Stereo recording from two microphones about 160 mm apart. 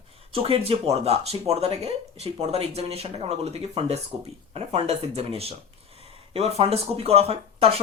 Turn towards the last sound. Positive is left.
turn(degrees=-40)  # may be behind; listen again after turning